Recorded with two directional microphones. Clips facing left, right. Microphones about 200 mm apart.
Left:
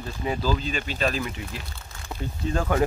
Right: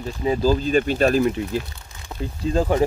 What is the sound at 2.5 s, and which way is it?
Speech, 30° right (ahead or behind).